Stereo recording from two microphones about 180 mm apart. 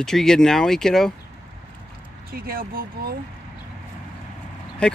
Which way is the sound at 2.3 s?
55° right (ahead or behind).